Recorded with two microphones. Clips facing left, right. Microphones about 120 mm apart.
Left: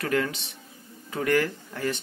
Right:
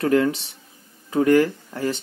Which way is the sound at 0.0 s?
30° right (ahead or behind).